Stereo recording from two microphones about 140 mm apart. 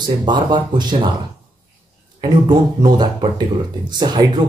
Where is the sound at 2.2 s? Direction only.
30° right (ahead or behind).